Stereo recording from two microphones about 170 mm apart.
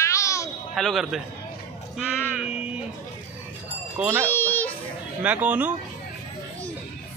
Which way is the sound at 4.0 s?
10° right (ahead or behind).